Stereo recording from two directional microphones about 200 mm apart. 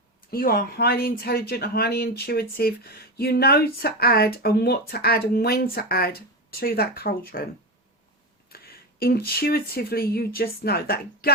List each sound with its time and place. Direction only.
0.2 s speech: 45° left (ahead or behind)
8.4 s speech: 50° left (ahead or behind)